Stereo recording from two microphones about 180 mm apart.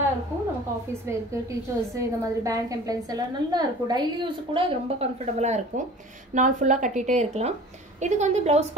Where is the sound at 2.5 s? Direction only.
20° right (ahead or behind).